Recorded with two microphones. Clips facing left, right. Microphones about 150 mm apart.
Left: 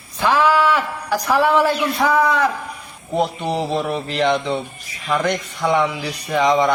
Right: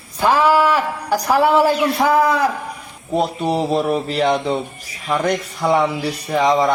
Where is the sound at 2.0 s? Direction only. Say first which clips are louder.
Right 1 dB; 35° right (ahead or behind).